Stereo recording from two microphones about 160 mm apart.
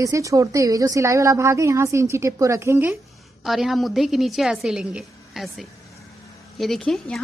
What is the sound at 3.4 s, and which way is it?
A woman's voice, centre (ahead or behind).